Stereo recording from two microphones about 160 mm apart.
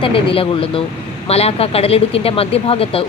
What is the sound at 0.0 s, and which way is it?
Speech, 35° left (ahead or behind).